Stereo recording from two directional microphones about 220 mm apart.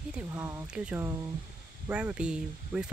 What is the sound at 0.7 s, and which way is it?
Speech, 5° right (ahead or behind).